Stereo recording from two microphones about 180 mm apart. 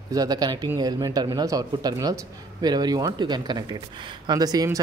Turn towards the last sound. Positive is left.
turn(degrees=-20)  # may be behind; listen again after turning